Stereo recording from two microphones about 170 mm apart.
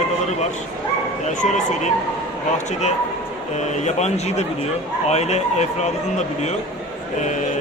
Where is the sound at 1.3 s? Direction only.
45° left (ahead or behind).